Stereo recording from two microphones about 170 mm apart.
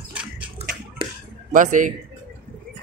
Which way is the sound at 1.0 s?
30° right (ahead or behind).